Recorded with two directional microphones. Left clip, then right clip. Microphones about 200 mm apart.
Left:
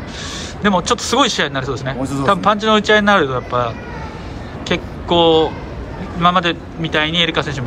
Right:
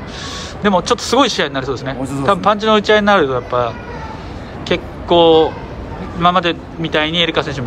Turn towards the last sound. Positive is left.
turn(degrees=-5)  # may be behind; listen again after turning